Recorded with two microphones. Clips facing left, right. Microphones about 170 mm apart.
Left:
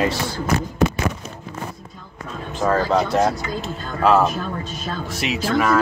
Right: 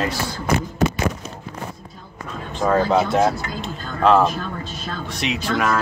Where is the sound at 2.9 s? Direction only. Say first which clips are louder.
Right 1 dB; centre (ahead or behind).